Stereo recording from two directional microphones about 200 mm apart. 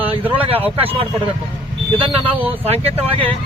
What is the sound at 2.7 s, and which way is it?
Speech, 30° right (ahead or behind).